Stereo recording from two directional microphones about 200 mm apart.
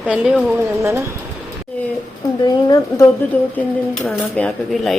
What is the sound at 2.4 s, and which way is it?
Speech, 20° left (ahead or behind).